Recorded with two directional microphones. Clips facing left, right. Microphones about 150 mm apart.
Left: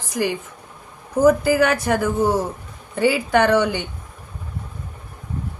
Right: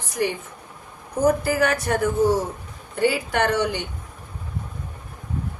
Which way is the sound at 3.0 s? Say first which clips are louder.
Left 4 dB; 90° left.